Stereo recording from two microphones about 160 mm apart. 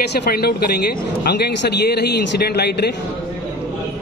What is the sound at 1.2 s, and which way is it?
A man's voice, 90° left.